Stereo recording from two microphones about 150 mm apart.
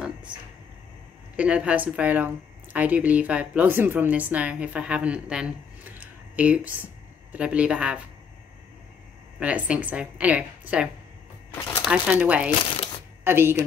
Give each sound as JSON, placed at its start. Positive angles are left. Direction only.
{"t": 1.3, "sound": "a woman's voice", "side_deg": -10}
{"t": 9.4, "sound": "a woman's voice", "side_deg": -10}
{"t": 11.5, "sound": "speech", "side_deg": 15}
{"t": 11.8, "sound": "a woman's voice", "side_deg": -5}